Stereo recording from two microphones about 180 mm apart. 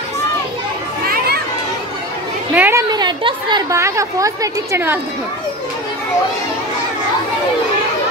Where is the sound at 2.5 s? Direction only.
10° right (ahead or behind).